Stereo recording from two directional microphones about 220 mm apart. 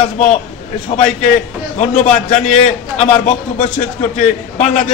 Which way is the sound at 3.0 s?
30° left (ahead or behind).